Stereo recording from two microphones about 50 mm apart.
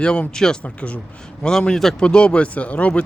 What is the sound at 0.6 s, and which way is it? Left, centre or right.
Speech, left.